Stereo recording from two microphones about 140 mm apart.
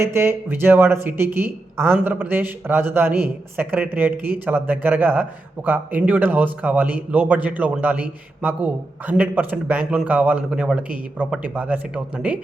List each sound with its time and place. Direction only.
0.0 s speech: 15° right (ahead or behind)